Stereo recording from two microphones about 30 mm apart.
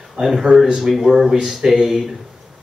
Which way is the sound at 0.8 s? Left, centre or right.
Centre.